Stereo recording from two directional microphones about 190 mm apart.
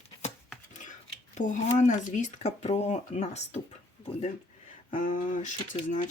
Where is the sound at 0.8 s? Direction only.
40° left (ahead or behind).